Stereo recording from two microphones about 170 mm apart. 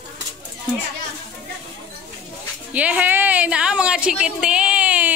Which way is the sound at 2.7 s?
10° right (ahead or behind).